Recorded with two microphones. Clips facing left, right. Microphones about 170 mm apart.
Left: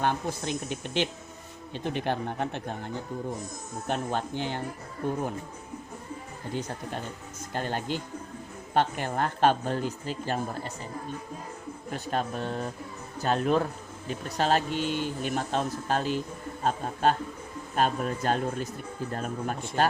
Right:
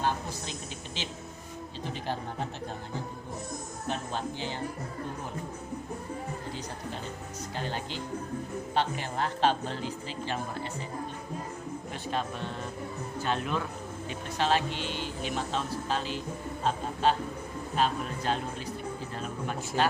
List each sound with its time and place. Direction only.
0.0 s speech: 60° left (ahead or behind)
3.8 s speech: 55° left (ahead or behind)
7.5 s speech: 50° left (ahead or behind)
12.1 s speech: 45° left (ahead or behind)